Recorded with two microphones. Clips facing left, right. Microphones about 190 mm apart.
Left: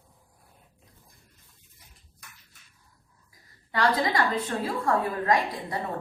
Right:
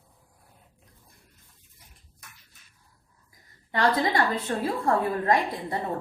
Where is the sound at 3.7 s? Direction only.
25° right (ahead or behind).